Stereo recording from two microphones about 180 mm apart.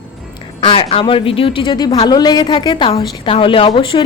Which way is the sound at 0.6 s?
30° left (ahead or behind).